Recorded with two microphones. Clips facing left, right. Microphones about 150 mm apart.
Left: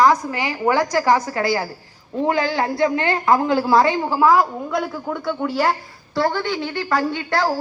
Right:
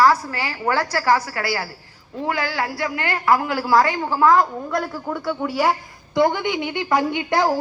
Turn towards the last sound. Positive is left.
turn(degrees=-15)  # may be behind; listen again after turning